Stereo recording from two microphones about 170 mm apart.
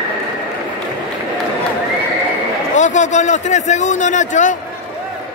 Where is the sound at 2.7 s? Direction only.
45° left (ahead or behind).